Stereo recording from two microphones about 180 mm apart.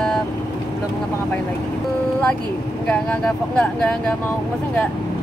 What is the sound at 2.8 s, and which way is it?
Speech, 5° left (ahead or behind).